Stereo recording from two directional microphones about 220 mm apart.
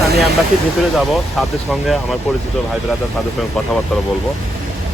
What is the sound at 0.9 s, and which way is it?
Speech, centre (ahead or behind).